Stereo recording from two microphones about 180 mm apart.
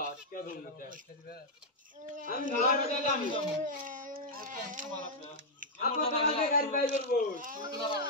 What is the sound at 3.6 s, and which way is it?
Speech, 45° right (ahead or behind).